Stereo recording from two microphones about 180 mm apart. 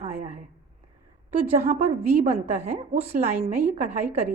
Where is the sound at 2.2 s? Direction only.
40° right (ahead or behind).